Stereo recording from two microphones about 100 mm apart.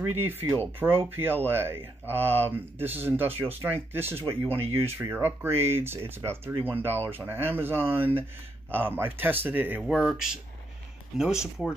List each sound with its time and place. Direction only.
0.1 s speech: 20° right (ahead or behind)
9.8 s speech: 5° right (ahead or behind)